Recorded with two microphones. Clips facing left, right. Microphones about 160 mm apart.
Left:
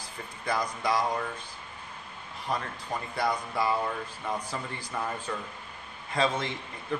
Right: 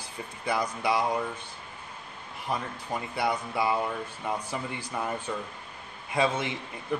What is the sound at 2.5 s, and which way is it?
Speech, 10° right (ahead or behind).